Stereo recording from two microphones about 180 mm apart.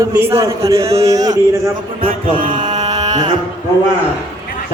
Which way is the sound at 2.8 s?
20° right (ahead or behind).